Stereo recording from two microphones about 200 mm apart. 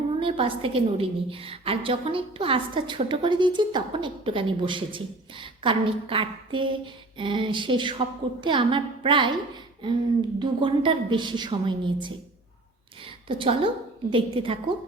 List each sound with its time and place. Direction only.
0.2 s a woman's voice: 25° right (ahead or behind)